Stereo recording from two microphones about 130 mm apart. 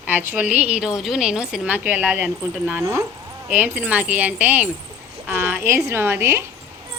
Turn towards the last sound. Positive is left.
turn(degrees=-20)  # may be behind; listen again after turning